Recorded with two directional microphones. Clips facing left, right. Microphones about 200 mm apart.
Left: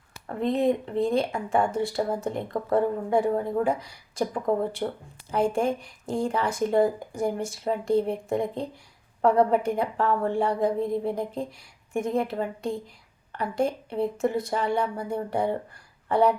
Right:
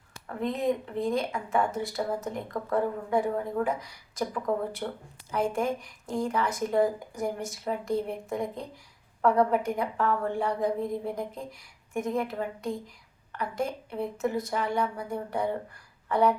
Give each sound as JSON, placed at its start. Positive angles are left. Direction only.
{"t": 0.3, "sound": "a woman's voice", "side_deg": 30}